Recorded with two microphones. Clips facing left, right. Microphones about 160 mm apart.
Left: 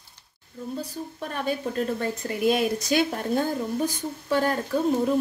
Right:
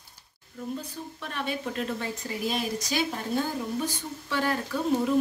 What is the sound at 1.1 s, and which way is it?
Speech, 40° left (ahead or behind).